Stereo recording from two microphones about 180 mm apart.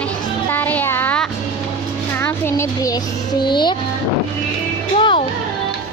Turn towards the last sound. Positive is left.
turn(degrees=30)  # may be behind; listen again after turning